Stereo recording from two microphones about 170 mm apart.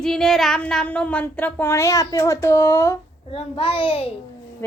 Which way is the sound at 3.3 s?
35° left (ahead or behind).